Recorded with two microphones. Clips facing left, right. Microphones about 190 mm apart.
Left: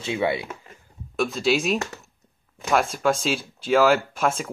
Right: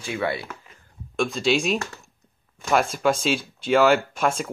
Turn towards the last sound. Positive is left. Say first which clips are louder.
# even
turn(degrees=0)  # may be behind; listen again after turning